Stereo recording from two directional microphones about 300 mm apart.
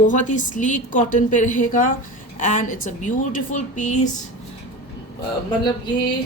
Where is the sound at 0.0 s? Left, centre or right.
Left.